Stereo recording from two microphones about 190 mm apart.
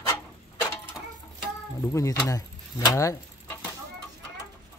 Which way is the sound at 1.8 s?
15° left (ahead or behind).